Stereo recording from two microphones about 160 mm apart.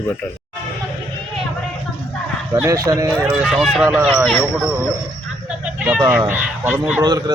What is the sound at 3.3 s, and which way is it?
A man's voice, 5° right (ahead or behind).